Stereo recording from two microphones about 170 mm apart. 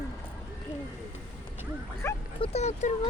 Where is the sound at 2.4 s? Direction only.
40° left (ahead or behind).